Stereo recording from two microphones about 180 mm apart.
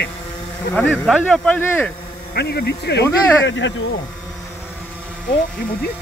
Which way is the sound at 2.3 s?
65° left (ahead or behind).